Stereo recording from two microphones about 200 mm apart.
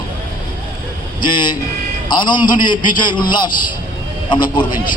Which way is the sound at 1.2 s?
20° left (ahead or behind).